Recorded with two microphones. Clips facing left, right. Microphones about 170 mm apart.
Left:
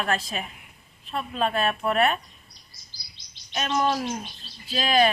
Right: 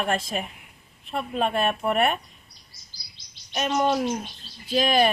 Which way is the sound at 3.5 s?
10° right (ahead or behind).